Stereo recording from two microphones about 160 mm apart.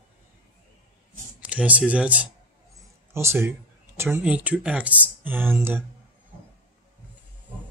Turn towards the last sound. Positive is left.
turn(degrees=-15)  # may be behind; listen again after turning